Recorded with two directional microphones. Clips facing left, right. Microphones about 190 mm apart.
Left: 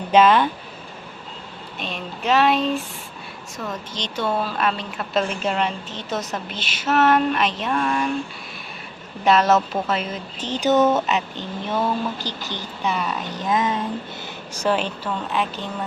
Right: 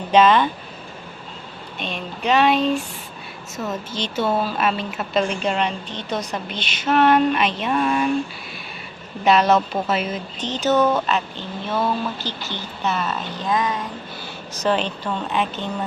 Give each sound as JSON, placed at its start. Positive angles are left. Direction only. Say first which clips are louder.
{"t": 0.1, "sound": "speech", "louder": "even", "side_deg": 5}
{"t": 1.8, "sound": "a woman's voice", "louder": "right 2 dB", "side_deg": 0}
{"t": 9.2, "sound": "a woman's voice", "louder": "right 1 dB", "side_deg": 0}
{"t": 10.4, "sound": "speech", "louder": "left 1 dB", "side_deg": 10}
{"t": 14.5, "sound": "a woman's voice", "louder": "right 1 dB", "side_deg": 10}